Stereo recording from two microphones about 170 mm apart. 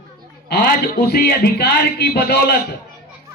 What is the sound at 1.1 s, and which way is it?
A man's voice, 70° left (ahead or behind).